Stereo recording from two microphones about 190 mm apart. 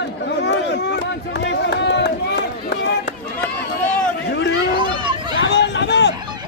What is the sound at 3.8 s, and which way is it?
Run, 5° left (ahead or behind).